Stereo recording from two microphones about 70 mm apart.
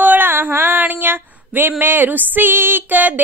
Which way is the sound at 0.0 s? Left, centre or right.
Right.